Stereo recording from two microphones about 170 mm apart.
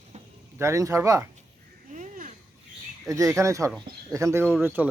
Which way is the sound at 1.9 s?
50° right (ahead or behind).